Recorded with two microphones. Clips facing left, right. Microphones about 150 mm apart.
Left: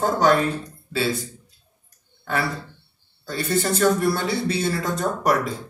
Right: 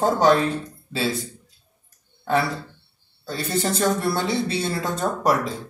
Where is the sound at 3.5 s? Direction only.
25° right (ahead or behind).